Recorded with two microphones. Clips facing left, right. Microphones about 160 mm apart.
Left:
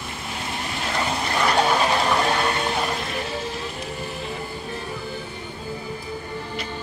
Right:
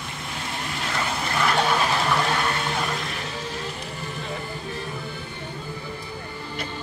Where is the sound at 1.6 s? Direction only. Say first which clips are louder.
Left 4 dB; 15° left (ahead or behind).